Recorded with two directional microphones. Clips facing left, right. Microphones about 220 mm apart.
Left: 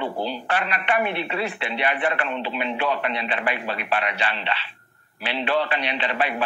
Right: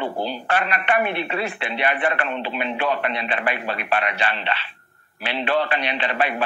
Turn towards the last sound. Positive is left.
turn(degrees=-50)  # may be behind; listen again after turning